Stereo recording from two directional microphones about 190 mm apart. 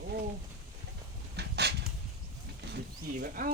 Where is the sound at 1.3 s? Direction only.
60° right (ahead or behind).